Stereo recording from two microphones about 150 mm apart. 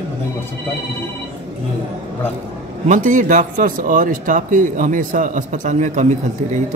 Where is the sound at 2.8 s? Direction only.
60° right (ahead or behind).